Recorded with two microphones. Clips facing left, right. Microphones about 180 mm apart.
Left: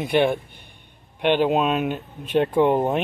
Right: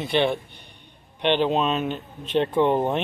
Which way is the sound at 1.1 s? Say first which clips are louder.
Left 2 dB; 5° left (ahead or behind).